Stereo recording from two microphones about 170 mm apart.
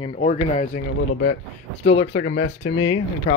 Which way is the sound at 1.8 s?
90° left.